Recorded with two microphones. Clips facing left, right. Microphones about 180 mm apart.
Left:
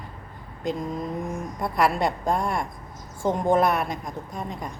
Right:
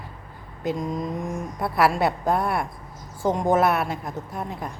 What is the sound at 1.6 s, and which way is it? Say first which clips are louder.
A woman's voice: right 2 dB; 5° right (ahead or behind).